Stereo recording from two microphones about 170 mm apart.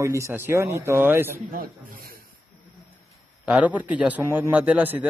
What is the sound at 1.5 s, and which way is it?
Speech, 60° right (ahead or behind).